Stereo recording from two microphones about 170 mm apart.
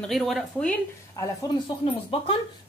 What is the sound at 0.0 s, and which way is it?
Speech, centre (ahead or behind).